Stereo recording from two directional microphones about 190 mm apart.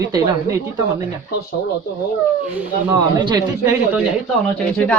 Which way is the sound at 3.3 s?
20° right (ahead or behind).